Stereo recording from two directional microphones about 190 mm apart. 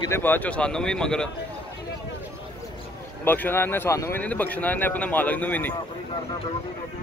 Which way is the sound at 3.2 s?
10° left (ahead or behind).